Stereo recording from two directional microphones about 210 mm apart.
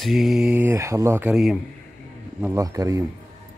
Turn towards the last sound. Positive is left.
turn(degrees=-15)  # may be behind; listen again after turning